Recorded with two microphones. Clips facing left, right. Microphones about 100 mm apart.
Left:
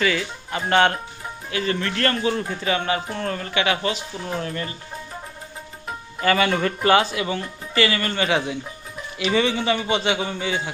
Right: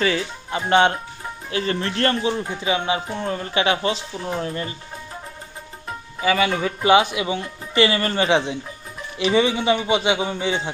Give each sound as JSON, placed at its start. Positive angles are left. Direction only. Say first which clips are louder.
{"t": 0.0, "sound": "speech", "louder": "right 1 dB", "side_deg": -30}
{"t": 1.5, "sound": "speech", "louder": "right 1 dB", "side_deg": -30}
{"t": 2.3, "sound": "a man's voice", "louder": "right 1 dB", "side_deg": -15}
{"t": 3.5, "sound": "speech", "louder": "right 2 dB", "side_deg": -30}
{"t": 6.1, "sound": "speech", "louder": "even", "side_deg": 0}
{"t": 6.8, "sound": "a man's voice", "louder": "right 3 dB", "side_deg": -15}